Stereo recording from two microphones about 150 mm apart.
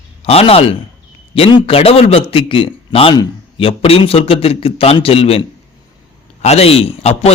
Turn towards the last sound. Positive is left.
turn(degrees=40)  # may be behind; listen again after turning